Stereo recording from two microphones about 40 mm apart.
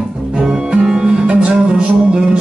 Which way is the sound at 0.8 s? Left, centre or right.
Centre.